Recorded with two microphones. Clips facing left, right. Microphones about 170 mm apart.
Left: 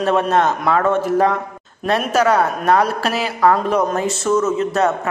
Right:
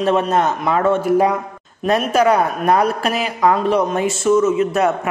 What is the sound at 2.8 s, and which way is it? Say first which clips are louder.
Speech: right 1 dB; 30° left (ahead or behind).